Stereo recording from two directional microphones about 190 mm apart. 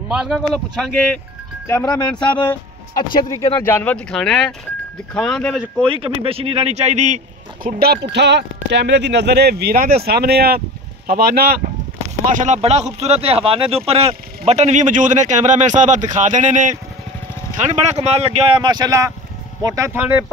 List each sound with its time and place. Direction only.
0.1 s speech: centre (ahead or behind)
1.7 s speech: 15° left (ahead or behind)
3.0 s speech: 20° left (ahead or behind); by 5.6 s 5° left (ahead or behind)
5.9 s speech: 30° right (ahead or behind)
7.6 s speech: 55° right (ahead or behind)
12.3 s speech: 40° right (ahead or behind)
18.0 s speech: 35° right (ahead or behind); by 20.1 s 15° right (ahead or behind)